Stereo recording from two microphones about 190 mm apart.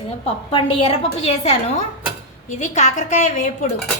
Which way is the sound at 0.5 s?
30° left (ahead or behind).